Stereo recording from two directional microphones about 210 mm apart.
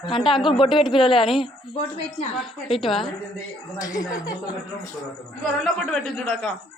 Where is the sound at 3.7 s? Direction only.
15° left (ahead or behind).